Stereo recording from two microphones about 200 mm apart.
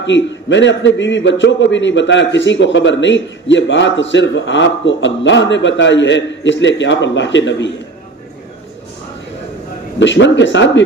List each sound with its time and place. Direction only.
0.0 s a man's voice: 65° left (ahead or behind)
9.9 s a man's voice: 65° left (ahead or behind)